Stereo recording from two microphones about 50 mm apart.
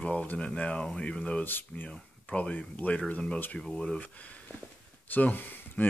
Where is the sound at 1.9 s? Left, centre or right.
Centre.